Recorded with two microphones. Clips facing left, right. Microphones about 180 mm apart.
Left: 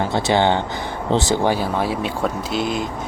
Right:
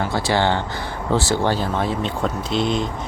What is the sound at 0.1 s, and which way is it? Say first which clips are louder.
Speech: left 3 dB; 20° left (ahead or behind).